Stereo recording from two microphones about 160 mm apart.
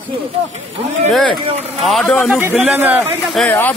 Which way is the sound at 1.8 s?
5° left (ahead or behind).